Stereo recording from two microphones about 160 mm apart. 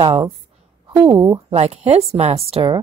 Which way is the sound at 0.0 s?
30° right (ahead or behind).